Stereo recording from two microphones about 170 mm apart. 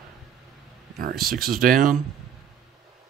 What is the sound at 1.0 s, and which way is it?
Speech, 60° right (ahead or behind).